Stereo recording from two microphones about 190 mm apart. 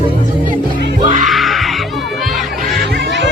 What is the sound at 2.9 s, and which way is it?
Music, 65° right (ahead or behind).